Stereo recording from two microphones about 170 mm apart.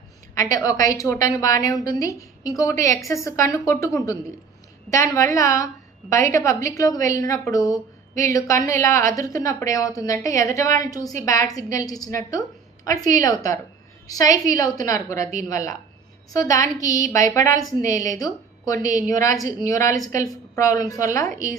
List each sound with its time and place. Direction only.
0.3 s a woman's voice: 20° left (ahead or behind)
18.9 s a woman's voice: 45° right (ahead or behind)
19.2 s a woman's voice: 20° left (ahead or behind)